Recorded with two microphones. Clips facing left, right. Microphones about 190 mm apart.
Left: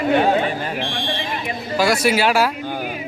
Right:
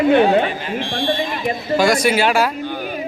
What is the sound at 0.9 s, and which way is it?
Speech, 40° right (ahead or behind).